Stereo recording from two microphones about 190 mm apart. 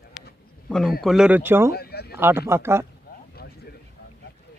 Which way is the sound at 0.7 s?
Centre (ahead or behind).